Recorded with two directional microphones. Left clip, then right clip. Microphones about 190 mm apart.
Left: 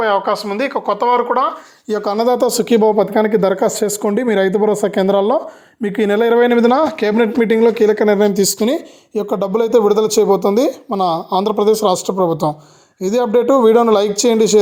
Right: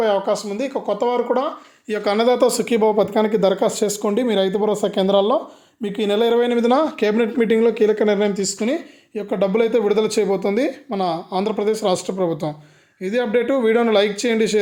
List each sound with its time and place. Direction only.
0.0 s speech: 5° right (ahead or behind)
2.0 s speech: 25° left (ahead or behind)
2.9 s speech: 20° left (ahead or behind)
8.2 s speech: 40° left (ahead or behind)
9.1 s speech: 30° left (ahead or behind)